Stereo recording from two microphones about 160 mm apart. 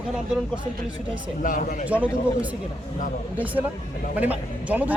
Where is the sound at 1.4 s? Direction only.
60° left (ahead or behind).